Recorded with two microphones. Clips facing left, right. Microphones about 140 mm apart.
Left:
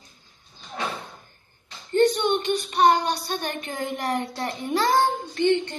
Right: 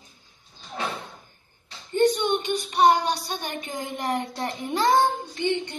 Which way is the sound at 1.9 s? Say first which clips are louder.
Left 1 dB; 15° right (ahead or behind).